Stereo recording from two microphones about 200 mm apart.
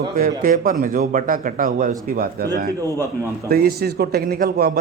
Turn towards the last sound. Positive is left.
turn(degrees=-50)  # may be behind; listen again after turning